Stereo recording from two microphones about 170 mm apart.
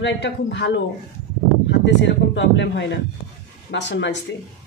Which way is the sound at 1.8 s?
90° left.